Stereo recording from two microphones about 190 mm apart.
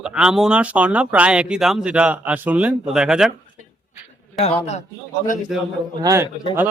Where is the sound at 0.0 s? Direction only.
5° right (ahead or behind).